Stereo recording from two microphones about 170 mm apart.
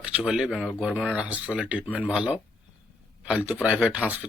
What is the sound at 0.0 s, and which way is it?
A man's voice, 5° right (ahead or behind).